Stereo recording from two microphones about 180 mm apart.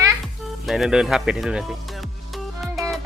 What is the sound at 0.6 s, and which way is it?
Music, centre (ahead or behind).